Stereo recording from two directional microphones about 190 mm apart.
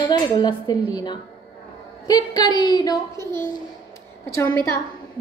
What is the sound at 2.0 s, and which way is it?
A man's voice, 20° left (ahead or behind).